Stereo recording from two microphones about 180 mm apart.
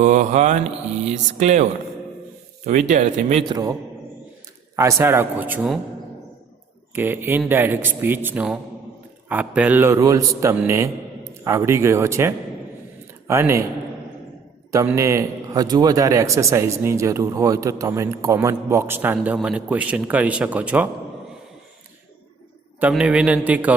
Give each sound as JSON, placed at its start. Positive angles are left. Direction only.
{"t": 0.0, "sound": "speech", "side_deg": -45}
{"t": 2.6, "sound": "speech", "side_deg": -45}
{"t": 3.4, "sound": "a man's voice", "side_deg": -20}
{"t": 4.8, "sound": "a man's voice", "side_deg": -15}
{"t": 6.9, "sound": "a man's voice", "side_deg": -10}
{"t": 14.7, "sound": "a man's voice", "side_deg": -15}
{"t": 22.8, "sound": "a man's voice", "side_deg": -5}